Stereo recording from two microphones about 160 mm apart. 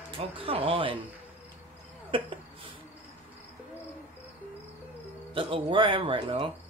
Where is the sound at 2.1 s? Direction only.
35° right (ahead or behind).